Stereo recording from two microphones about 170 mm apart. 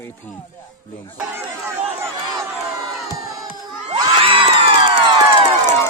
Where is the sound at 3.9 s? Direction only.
30° right (ahead or behind).